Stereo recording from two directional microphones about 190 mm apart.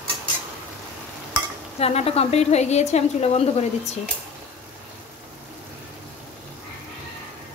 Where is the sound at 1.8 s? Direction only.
35° left (ahead or behind).